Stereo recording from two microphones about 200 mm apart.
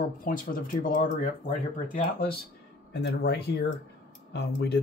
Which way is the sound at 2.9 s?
55° left (ahead or behind).